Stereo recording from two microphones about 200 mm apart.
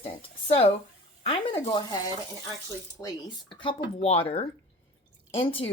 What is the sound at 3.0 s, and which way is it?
Speech, 10° left (ahead or behind).